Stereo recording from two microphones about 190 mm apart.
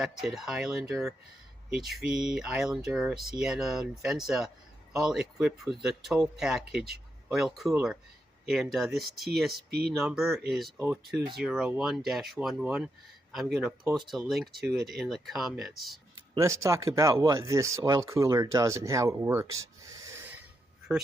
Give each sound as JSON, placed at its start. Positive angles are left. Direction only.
{"t": 0.0, "sound": "speech", "side_deg": 0}
{"t": 9.5, "sound": "speech", "side_deg": -55}
{"t": 10.0, "sound": "speech", "side_deg": -5}
{"t": 11.3, "sound": "speech", "side_deg": 0}
{"t": 16.3, "sound": "speech", "side_deg": -15}